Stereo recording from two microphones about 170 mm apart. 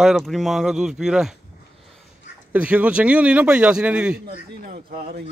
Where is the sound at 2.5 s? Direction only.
10° right (ahead or behind).